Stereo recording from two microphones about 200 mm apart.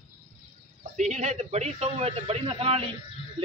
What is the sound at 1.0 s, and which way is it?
Speech, 35° right (ahead or behind).